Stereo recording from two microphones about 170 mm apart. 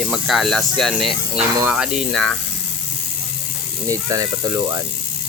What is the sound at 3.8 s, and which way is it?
Speech, 20° right (ahead or behind).